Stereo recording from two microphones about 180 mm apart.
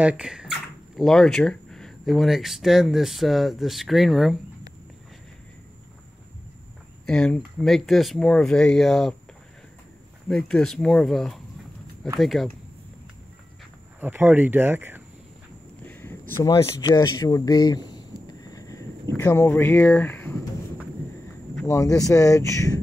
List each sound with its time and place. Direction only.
0.0 s speech: 5° right (ahead or behind)
7.1 s speech: 5° left (ahead or behind)
10.2 s speech: 5° left (ahead or behind)
13.9 s speech: 10° right (ahead or behind)
15.9 s a sound: 10° left (ahead or behind)
21.6 s speech: 20° left (ahead or behind)